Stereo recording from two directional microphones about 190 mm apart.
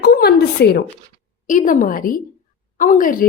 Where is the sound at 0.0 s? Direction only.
55° left (ahead or behind).